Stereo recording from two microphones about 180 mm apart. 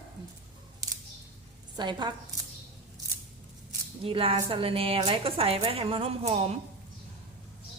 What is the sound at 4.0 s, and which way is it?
A woman's voice, 30° right (ahead or behind).